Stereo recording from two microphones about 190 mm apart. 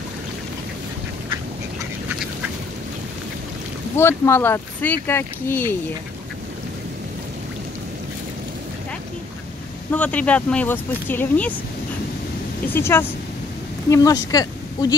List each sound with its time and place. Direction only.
3.9 s speech: 10° left (ahead or behind)
9.8 s speech: 5° left (ahead or behind)
12.7 s speech: 10° left (ahead or behind)